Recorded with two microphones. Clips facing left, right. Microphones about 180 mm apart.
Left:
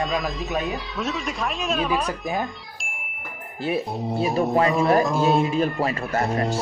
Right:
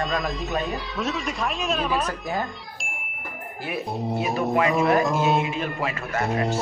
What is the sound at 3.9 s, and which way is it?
Speech, centre (ahead or behind).